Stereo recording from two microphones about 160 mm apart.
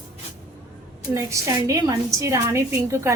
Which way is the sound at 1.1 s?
20° right (ahead or behind).